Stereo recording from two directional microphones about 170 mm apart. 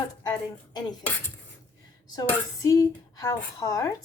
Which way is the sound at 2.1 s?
20° left (ahead or behind).